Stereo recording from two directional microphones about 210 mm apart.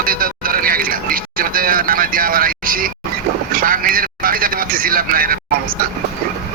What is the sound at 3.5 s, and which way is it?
Vehicle, 40° right (ahead or behind).